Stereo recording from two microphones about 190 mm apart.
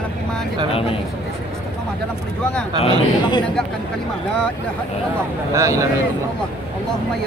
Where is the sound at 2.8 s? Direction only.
25° left (ahead or behind).